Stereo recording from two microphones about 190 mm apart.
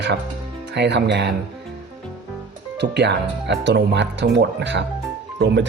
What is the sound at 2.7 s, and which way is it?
Speech, 65° right (ahead or behind).